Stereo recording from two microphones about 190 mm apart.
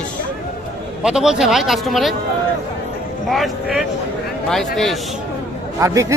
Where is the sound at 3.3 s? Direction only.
Centre (ahead or behind).